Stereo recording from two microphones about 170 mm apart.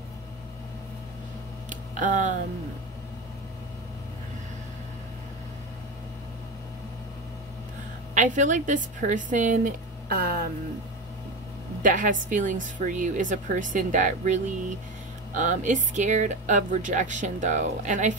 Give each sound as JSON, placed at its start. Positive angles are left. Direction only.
{"t": 1.7, "sound": "a sound", "side_deg": -50}
{"t": 8.1, "sound": "speech", "side_deg": -45}
{"t": 11.8, "sound": "speech", "side_deg": -50}